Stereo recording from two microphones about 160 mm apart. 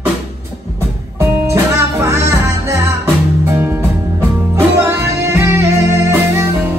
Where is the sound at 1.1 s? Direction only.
15° right (ahead or behind).